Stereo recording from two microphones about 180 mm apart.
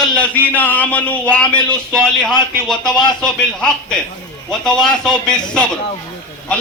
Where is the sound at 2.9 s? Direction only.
25° left (ahead or behind).